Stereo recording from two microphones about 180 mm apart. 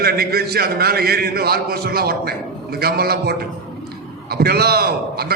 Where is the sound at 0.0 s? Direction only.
60° right (ahead or behind).